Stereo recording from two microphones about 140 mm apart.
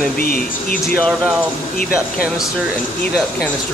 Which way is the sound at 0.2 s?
90° left.